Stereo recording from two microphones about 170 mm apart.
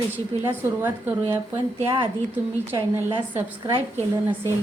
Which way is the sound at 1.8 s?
30° right (ahead or behind).